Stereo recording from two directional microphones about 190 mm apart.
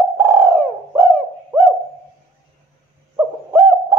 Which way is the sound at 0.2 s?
15° right (ahead or behind).